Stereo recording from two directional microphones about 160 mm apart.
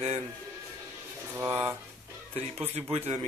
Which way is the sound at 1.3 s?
15° right (ahead or behind).